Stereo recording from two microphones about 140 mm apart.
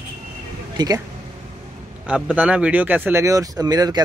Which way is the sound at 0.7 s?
25° right (ahead or behind).